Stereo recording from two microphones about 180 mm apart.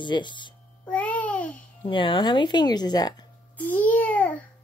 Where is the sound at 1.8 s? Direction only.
30° left (ahead or behind).